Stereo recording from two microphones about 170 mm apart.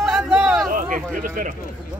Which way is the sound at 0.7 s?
50° right (ahead or behind).